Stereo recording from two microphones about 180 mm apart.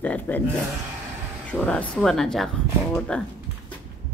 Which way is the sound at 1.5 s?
5° left (ahead or behind).